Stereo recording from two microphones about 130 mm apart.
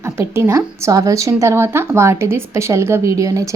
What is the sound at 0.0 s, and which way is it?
Speech, 20° right (ahead or behind).